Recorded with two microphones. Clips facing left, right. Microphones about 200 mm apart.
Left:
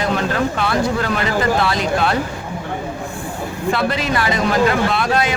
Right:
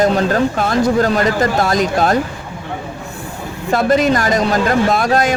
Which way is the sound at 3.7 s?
45° right (ahead or behind).